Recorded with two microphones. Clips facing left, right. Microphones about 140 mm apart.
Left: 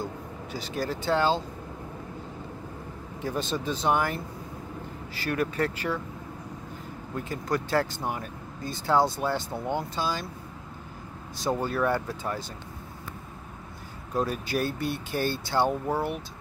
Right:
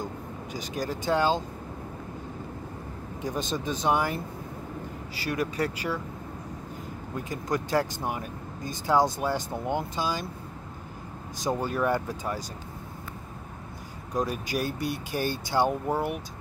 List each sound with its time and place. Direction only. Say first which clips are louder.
0.0 s speech: even; 15° right (ahead or behind)
3.2 s speech: left 1 dB; 15° right (ahead or behind)
5.1 s speech: left 1 dB; 10° right (ahead or behind)
7.2 s speech: even; 15° right (ahead or behind)
11.4 s speech: even; 15° right (ahead or behind)
14.5 s speech: left 1 dB; 10° right (ahead or behind)